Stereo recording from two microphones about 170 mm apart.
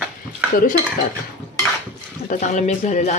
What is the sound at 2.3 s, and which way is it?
Speech, 45° left (ahead or behind).